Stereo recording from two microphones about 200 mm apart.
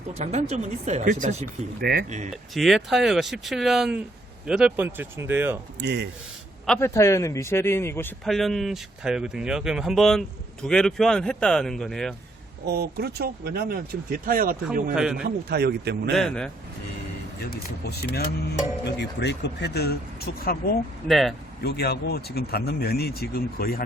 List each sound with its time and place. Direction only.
0.1 s speech: 30° right (ahead or behind)
1.8 s speech: 50° right (ahead or behind)
2.0 s speech: 35° right (ahead or behind)
2.3 s speech: centre (ahead or behind)
5.8 s speech: 55° right (ahead or behind)
6.7 s a man's voice: 10° left (ahead or behind)
8.2 s speech: centre (ahead or behind)
12.6 s speech: 55° right (ahead or behind)
14.9 s speech: 5° right (ahead or behind)
15.2 s speech: 50° right (ahead or behind)
16.1 s speech: 5° left (ahead or behind)
17.8 s speech: 55° left (ahead or behind)
21.1 s speech: centre (ahead or behind)
21.6 s speech: 55° left (ahead or behind)